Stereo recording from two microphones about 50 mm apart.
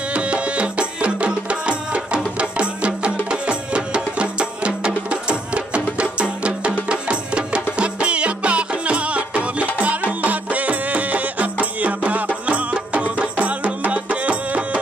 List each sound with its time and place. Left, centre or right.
0.1 s music: right